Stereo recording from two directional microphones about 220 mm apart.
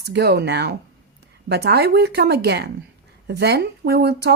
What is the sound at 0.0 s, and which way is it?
A woman's voice, 50° right (ahead or behind).